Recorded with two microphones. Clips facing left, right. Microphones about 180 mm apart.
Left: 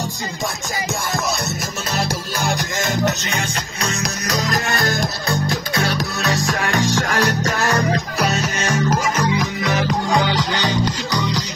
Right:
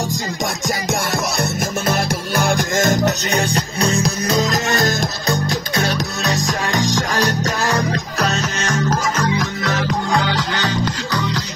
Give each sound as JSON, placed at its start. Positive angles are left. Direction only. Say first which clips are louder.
{"t": 1.9, "sound": "music", "louder": "right 1 dB", "side_deg": -55}
{"t": 5.9, "sound": "music", "louder": "even", "side_deg": -20}
{"t": 8.2, "sound": "music", "louder": "even", "side_deg": 10}